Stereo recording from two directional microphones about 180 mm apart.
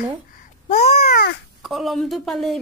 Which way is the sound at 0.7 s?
40° left (ahead or behind).